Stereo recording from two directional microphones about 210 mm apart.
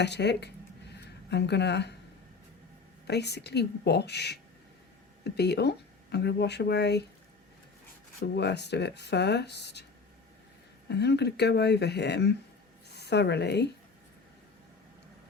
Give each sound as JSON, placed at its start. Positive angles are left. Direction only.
{"t": 0.0, "sound": "speech", "side_deg": 55}
{"t": 3.1, "sound": "speech", "side_deg": 50}
{"t": 8.2, "sound": "speech", "side_deg": 50}
{"t": 10.8, "sound": "speech", "side_deg": 55}